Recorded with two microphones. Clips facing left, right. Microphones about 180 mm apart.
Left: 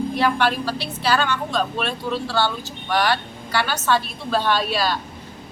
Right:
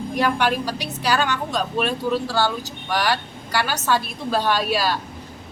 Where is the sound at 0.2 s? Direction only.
15° right (ahead or behind).